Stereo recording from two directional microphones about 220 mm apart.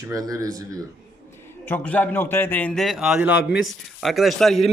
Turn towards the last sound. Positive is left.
turn(degrees=0)  # may be behind; listen again after turning